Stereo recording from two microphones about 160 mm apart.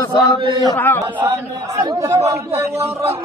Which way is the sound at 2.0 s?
20° right (ahead or behind).